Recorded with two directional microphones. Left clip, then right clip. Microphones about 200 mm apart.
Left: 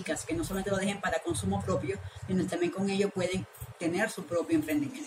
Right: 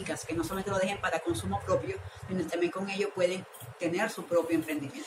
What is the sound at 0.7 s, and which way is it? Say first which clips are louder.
Speech: right 1 dB; 55° left (ahead or behind).